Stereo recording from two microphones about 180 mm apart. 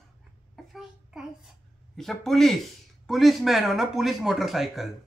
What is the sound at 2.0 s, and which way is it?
A child's voice, centre (ahead or behind).